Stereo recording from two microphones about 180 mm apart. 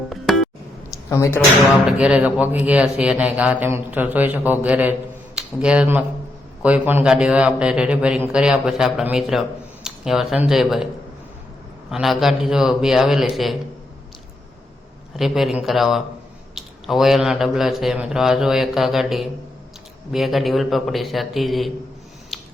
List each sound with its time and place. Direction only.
1.1 s speech: 15° left (ahead or behind)
1.9 s a man's voice: 5° right (ahead or behind)
9.8 s a sound: centre (ahead or behind)
10.4 s a man's voice: centre (ahead or behind)
11.9 s a man's voice: centre (ahead or behind)
15.1 s a man's voice: centre (ahead or behind)
22.3 s a sound: centre (ahead or behind)